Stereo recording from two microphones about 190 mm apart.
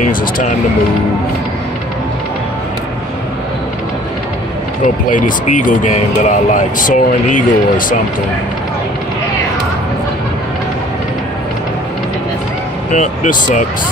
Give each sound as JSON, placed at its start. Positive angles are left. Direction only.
{"t": 0.0, "sound": "speech", "side_deg": 40}
{"t": 4.8, "sound": "speech", "side_deg": 45}
{"t": 12.9, "sound": "speech", "side_deg": 40}